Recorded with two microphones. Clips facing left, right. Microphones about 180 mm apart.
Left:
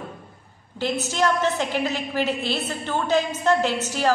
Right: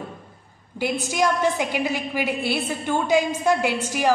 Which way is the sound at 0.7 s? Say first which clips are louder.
Right 1 dB; 10° right (ahead or behind).